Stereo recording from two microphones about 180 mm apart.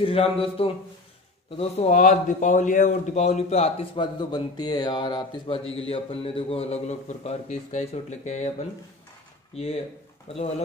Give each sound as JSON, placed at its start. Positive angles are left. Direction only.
{"t": 0.0, "sound": "a man's voice", "side_deg": 35}